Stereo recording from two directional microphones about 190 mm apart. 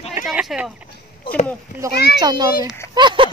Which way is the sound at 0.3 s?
5° right (ahead or behind).